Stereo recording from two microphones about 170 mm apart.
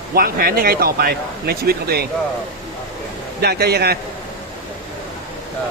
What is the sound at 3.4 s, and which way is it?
Speech, 65° right (ahead or behind).